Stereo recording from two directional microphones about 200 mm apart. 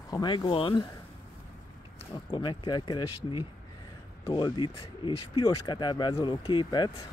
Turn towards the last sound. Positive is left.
turn(degrees=20)  # may be behind; listen again after turning